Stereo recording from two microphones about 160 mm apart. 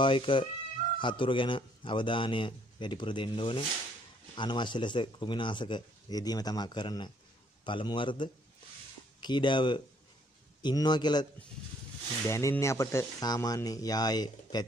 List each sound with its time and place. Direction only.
0.0 s a man's voice: 30° left (ahead or behind)
12.3 s speech: 20° left (ahead or behind)